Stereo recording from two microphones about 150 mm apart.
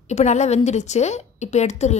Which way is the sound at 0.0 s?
50° left (ahead or behind).